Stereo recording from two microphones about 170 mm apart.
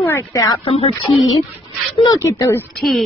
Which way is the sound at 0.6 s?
35° left (ahead or behind).